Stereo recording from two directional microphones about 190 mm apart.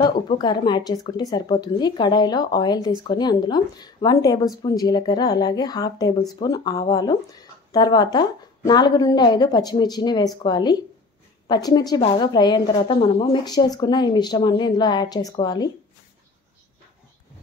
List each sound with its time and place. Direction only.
0.0 s speech: 25° left (ahead or behind)